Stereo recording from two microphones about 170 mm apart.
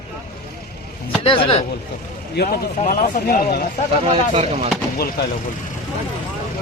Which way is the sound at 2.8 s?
45° left (ahead or behind).